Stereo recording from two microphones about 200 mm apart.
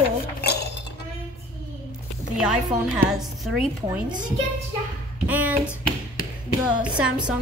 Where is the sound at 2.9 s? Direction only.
5° right (ahead or behind).